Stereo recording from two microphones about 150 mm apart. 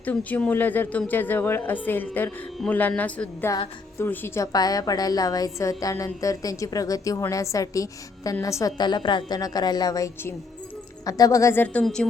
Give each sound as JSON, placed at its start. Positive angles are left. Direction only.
{"t": 0.0, "sound": "speech", "side_deg": 10}
{"t": 4.5, "sound": "a woman's voice", "side_deg": 25}